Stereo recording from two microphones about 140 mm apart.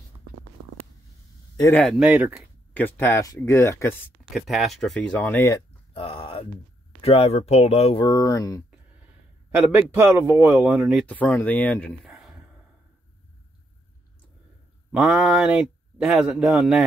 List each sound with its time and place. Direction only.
1.7 s speech: 10° left (ahead or behind)
2.0 s speech: 10° right (ahead or behind)
2.7 s speech: 15° left (ahead or behind)
4.3 s speech: centre (ahead or behind)
5.2 s speech: 20° left (ahead or behind)
5.9 s a sound: 40° left (ahead or behind)
7.0 s speech: 45° left (ahead or behind)
8.0 s speech: 30° left (ahead or behind)
9.7 s speech: 15° right (ahead or behind)
10.6 s speech: 5° right (ahead or behind)
11.1 s speech: 10° left (ahead or behind)
12.1 s a sound: 5° right (ahead or behind)
14.9 s speech: 5° right (ahead or behind)